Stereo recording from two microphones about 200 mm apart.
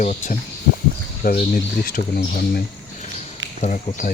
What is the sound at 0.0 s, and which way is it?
Speech, 35° left (ahead or behind).